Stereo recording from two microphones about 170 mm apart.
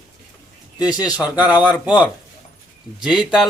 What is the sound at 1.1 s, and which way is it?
Speech, 10° right (ahead or behind).